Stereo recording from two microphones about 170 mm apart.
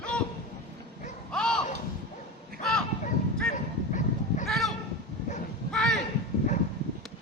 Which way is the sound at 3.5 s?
45° left (ahead or behind).